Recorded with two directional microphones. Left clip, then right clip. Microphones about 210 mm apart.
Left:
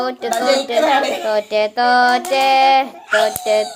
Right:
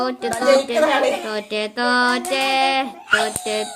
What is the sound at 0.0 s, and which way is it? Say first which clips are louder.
A woman's voice: left 2 dB; 25° right (ahead or behind).